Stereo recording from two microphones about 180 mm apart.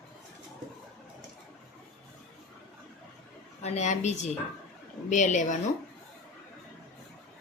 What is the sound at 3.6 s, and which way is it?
A woman's voice, 40° left (ahead or behind).